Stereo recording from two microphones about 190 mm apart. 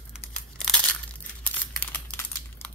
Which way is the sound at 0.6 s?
5° left (ahead or behind).